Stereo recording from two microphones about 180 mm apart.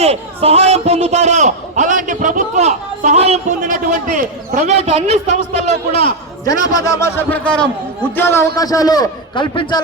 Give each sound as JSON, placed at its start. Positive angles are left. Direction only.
{"t": 0.0, "sound": "a man's voice", "side_deg": -35}
{"t": 5.9, "sound": "a man's voice", "side_deg": 30}
{"t": 6.4, "sound": "a man's voice", "side_deg": 20}